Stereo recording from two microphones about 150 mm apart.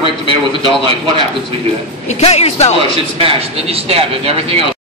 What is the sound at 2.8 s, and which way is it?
A man's voice, 40° right (ahead or behind).